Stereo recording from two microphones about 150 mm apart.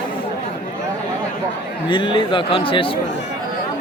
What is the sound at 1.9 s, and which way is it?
Speech, 35° left (ahead or behind).